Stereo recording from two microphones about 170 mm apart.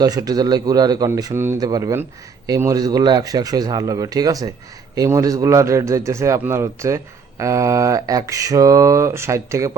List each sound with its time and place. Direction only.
0.0 s a man's voice: 20° right (ahead or behind)